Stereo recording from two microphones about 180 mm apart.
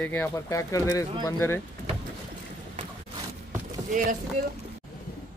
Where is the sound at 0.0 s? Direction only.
10° left (ahead or behind).